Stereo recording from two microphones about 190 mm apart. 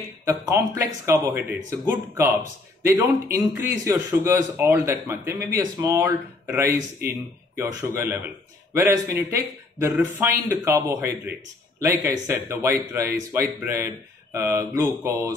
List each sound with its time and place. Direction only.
0.3 s speech: 15° right (ahead or behind)